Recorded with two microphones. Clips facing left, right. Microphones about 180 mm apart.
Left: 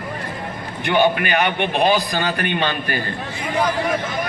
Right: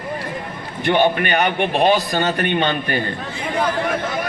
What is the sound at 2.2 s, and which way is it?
Speech, 40° right (ahead or behind).